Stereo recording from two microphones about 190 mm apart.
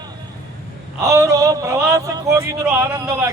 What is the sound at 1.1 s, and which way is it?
Speech, 20° right (ahead or behind).